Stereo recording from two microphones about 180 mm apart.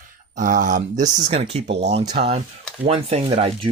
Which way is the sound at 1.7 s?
70° right (ahead or behind).